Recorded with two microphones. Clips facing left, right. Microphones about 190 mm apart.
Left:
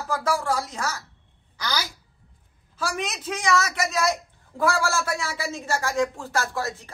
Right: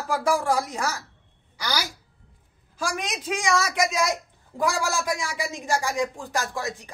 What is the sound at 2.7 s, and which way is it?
A woman's voice, 15° right (ahead or behind).